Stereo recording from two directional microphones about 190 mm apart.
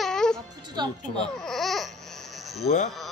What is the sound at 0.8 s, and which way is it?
Speech, 25° right (ahead or behind).